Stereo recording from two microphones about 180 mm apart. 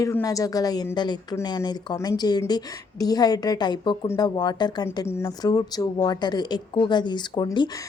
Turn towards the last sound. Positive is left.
turn(degrees=20)  # may be behind; listen again after turning